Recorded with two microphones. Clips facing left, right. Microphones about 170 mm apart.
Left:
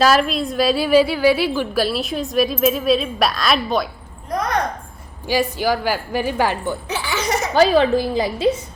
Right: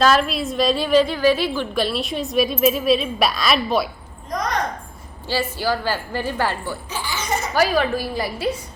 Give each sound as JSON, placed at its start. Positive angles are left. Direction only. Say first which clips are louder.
{"t": 0.0, "sound": "a woman's voice", "louder": "left 2 dB", "side_deg": 5}
{"t": 5.3, "sound": "a woman's voice", "louder": "left 3 dB", "side_deg": 15}
{"t": 6.8, "sound": "laughter", "louder": "left 4 dB", "side_deg": 75}
{"t": 7.5, "sound": "a woman's voice", "louder": "left 5 dB", "side_deg": 25}